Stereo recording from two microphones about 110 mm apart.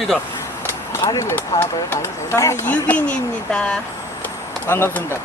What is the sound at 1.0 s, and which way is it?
Speech, 45° left (ahead or behind).